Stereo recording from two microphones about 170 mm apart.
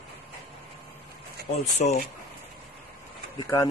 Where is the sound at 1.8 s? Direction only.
45° left (ahead or behind).